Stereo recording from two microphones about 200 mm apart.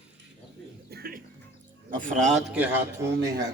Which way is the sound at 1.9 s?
40° right (ahead or behind).